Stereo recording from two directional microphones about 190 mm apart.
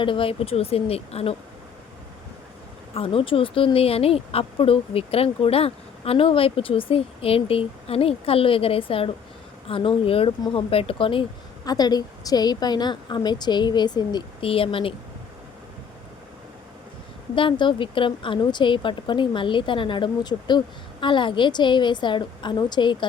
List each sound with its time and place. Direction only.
0.0 s speech: 25° left (ahead or behind)
2.9 s speech: 30° left (ahead or behind)
17.3 s speech: 25° left (ahead or behind)